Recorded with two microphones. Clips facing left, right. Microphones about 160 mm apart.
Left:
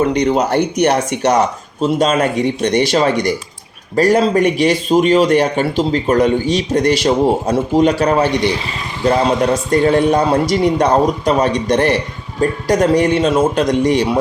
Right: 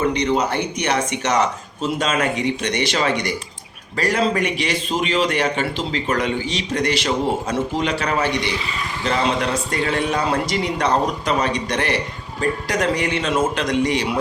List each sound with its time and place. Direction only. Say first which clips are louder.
0.1 s speech: left 6 dB; 40° left (ahead or behind)
0.6 s speech: left 8 dB; 60° left (ahead or behind)
1.8 s speech: left 7 dB; 30° left (ahead or behind)
2.6 s speech: left 9 dB; 45° left (ahead or behind)